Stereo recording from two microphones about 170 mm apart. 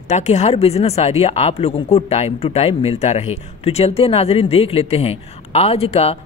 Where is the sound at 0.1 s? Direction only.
40° left (ahead or behind).